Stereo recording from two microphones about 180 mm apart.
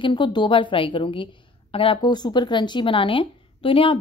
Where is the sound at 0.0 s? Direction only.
25° left (ahead or behind).